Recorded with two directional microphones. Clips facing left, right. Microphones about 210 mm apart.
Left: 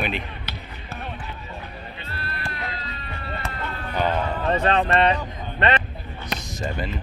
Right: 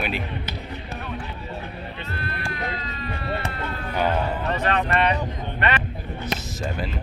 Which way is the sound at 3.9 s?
10° right (ahead or behind).